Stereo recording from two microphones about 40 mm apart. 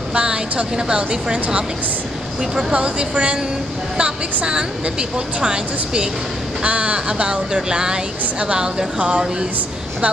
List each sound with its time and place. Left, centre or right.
0.1 s speech: right